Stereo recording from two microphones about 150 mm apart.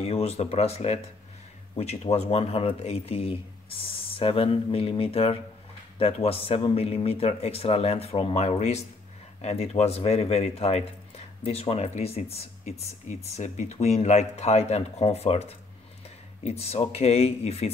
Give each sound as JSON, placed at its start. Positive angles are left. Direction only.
{"t": 0.0, "sound": "speech", "side_deg": 45}